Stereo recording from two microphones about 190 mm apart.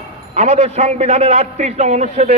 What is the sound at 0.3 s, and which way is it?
A man's voice, 35° right (ahead or behind).